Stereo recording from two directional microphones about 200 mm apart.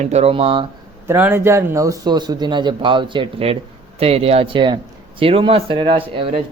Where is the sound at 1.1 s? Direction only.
10° right (ahead or behind).